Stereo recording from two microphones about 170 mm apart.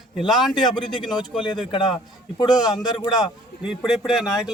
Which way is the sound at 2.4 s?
25° left (ahead or behind).